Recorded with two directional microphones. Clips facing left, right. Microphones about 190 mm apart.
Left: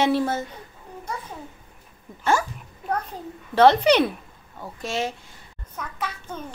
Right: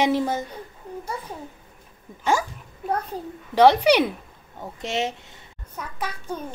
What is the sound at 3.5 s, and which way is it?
A woman's voice, 10° right (ahead or behind).